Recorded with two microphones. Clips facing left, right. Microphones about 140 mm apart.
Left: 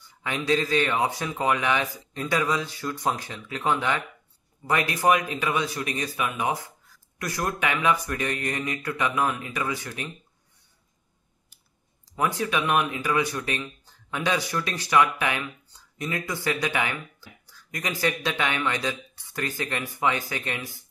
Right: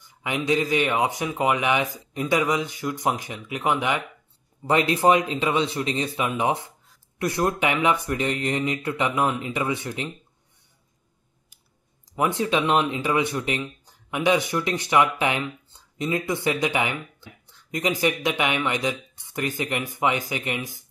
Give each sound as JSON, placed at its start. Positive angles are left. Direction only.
{"t": 0.0, "sound": "speech", "side_deg": -15}
{"t": 12.2, "sound": "speech", "side_deg": -20}